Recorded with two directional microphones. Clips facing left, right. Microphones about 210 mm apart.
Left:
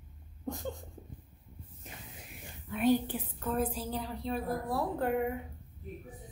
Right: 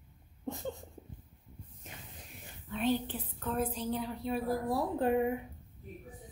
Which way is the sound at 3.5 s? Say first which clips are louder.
Left 1 dB; centre (ahead or behind).